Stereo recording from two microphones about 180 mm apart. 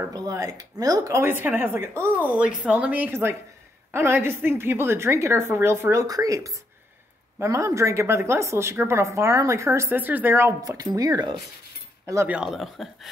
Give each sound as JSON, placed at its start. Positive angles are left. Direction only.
{"t": 0.0, "sound": "speech", "side_deg": -20}
{"t": 12.4, "sound": "speech", "side_deg": 0}